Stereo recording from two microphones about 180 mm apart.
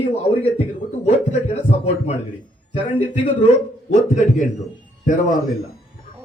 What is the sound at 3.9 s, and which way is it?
Speech, 40° left (ahead or behind).